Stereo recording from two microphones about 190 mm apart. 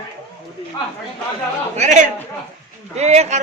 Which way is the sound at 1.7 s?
35° right (ahead or behind).